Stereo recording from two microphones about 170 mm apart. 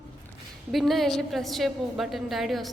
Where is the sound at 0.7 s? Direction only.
Centre (ahead or behind).